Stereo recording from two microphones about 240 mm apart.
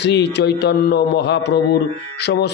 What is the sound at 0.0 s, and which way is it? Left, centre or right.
A man's voice, left.